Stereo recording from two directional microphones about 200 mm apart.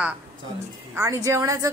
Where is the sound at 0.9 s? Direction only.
15° right (ahead or behind).